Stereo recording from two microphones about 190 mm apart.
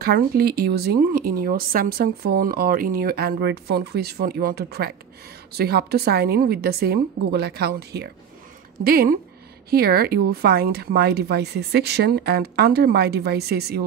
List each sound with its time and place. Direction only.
0.0 s speech: 55° right (ahead or behind)